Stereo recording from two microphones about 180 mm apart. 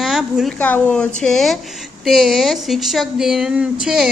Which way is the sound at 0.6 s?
10° left (ahead or behind).